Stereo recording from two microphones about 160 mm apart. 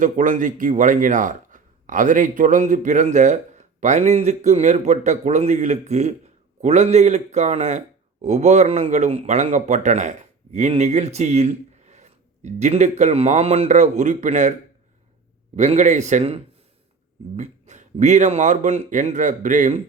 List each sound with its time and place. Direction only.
0.0 s a man's voice: 55° right (ahead or behind)
15.5 s a man's voice: 45° right (ahead or behind)